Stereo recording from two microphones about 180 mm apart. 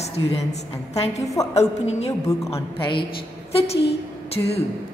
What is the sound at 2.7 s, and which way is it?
A woman's voice, 25° left (ahead or behind).